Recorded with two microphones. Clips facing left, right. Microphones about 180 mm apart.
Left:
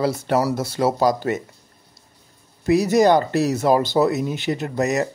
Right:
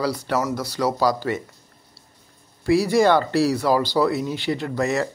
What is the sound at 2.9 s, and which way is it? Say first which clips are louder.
Speech: left 2 dB; 20° left (ahead or behind).